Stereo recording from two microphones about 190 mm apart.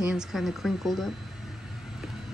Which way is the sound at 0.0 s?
Centre (ahead or behind).